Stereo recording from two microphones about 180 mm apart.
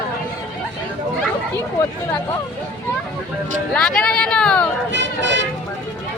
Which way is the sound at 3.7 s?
5° left (ahead or behind).